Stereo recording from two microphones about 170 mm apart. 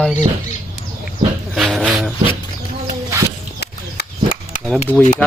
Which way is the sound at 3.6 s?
70° left (ahead or behind).